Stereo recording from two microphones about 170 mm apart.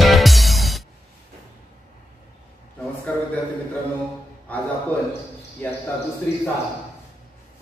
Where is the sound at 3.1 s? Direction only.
10° left (ahead or behind).